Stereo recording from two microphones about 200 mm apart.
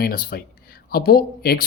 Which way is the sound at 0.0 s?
50° left (ahead or behind).